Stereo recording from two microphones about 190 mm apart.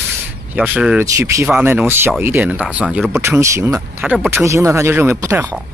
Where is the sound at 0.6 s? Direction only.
5° right (ahead or behind).